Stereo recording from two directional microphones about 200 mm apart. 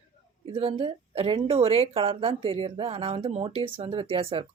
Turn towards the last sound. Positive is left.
turn(degrees=-30)  # may be behind; listen again after turning